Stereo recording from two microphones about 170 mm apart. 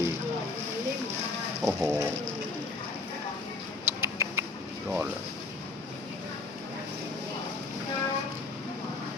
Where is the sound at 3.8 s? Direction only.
15° right (ahead or behind).